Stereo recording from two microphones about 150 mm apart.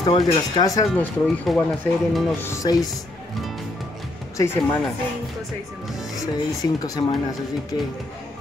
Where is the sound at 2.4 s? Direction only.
20° left (ahead or behind).